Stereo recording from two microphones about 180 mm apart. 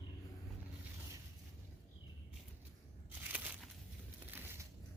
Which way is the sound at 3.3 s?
10° right (ahead or behind).